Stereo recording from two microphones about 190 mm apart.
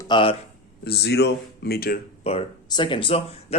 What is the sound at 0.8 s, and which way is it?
Speech, 55° left (ahead or behind).